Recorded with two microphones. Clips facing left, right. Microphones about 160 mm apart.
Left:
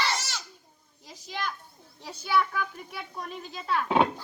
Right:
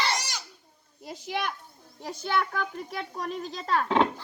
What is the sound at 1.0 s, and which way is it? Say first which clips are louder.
Children playing: right 4 dB; 60° right (ahead or behind).